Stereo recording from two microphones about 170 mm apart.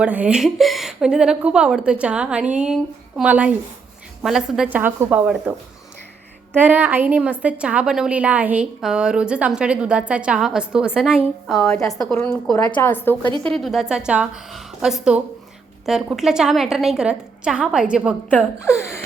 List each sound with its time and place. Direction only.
0.0 s a woman's voice: 5° right (ahead or behind)
11.5 s a woman's voice: 15° left (ahead or behind)
11.8 s a woman's voice: centre (ahead or behind)